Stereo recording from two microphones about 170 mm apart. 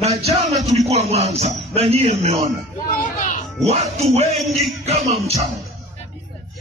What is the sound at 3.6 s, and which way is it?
Speech, 35° right (ahead or behind).